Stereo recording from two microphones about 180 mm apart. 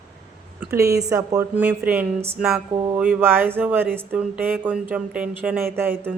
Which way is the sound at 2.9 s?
10° right (ahead or behind).